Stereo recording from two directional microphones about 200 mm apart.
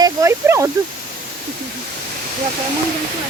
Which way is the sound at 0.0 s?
15° right (ahead or behind).